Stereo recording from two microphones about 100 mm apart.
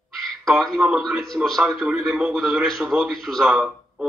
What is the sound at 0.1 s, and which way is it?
A man's voice, centre (ahead or behind).